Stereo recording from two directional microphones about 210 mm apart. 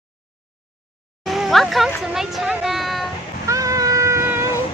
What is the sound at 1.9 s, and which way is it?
A woman's voice, centre (ahead or behind).